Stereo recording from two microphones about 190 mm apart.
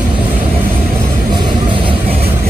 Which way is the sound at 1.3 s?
25° right (ahead or behind).